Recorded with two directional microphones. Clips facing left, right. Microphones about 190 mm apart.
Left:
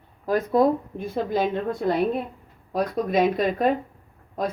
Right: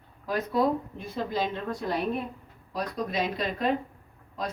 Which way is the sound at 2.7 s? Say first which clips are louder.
Left 7 dB; 50° left (ahead or behind).